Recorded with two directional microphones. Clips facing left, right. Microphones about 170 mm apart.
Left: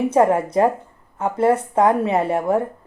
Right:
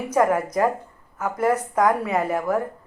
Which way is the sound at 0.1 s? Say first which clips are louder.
Right 1 dB; 30° left (ahead or behind).